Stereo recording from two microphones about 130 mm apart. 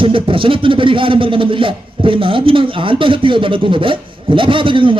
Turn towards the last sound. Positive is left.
turn(degrees=-40)  # may be behind; listen again after turning